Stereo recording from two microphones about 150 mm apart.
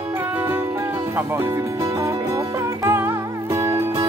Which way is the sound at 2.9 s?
15° right (ahead or behind).